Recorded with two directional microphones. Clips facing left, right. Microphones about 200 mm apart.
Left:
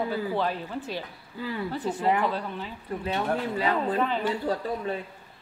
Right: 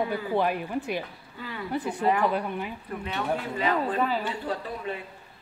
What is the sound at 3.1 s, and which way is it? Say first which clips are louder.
Speech: left 2 dB; 35° left (ahead or behind).